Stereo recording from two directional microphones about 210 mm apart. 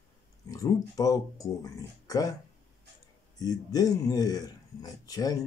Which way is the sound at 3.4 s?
15° left (ahead or behind).